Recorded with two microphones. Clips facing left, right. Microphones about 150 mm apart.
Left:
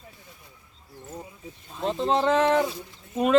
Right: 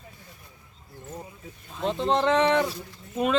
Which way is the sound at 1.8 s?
Centre (ahead or behind).